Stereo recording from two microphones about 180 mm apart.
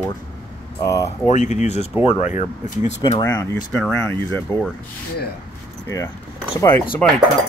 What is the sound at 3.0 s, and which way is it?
Speech, 20° left (ahead or behind).